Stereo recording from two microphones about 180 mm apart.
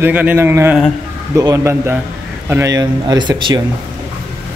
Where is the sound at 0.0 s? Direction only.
10° right (ahead or behind).